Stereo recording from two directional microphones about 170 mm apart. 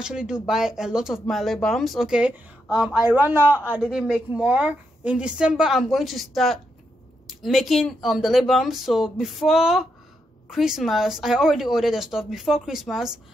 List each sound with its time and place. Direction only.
0.0 s speech: 5° right (ahead or behind)